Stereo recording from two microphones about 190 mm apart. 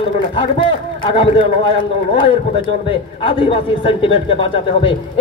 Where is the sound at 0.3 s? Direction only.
30° left (ahead or behind).